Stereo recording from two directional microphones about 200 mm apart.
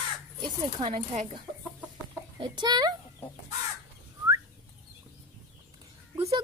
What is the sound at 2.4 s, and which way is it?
Speech, 20° right (ahead or behind).